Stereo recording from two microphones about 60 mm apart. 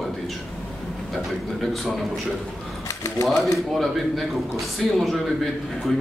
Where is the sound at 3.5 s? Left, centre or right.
Centre.